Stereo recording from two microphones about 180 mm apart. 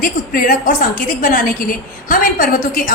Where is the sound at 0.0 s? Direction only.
50° left (ahead or behind).